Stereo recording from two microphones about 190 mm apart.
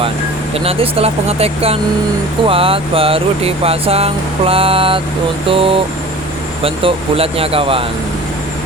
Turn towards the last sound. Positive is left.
turn(degrees=-30)  # may be behind; listen again after turning